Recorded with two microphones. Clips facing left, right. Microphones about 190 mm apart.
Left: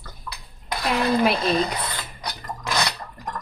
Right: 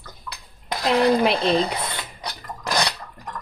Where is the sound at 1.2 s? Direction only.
30° right (ahead or behind).